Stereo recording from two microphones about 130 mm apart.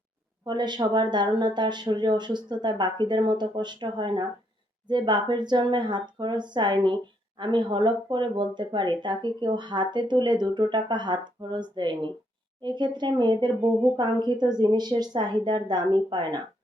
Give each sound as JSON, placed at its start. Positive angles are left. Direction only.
{"t": 0.4, "sound": "speech", "side_deg": -35}